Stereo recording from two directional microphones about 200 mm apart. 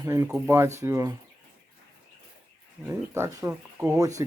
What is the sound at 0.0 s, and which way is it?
Speech, 15° right (ahead or behind).